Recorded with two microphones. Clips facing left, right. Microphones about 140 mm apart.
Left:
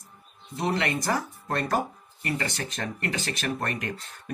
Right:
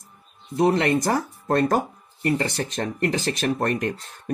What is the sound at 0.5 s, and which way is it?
Speech, 40° right (ahead or behind).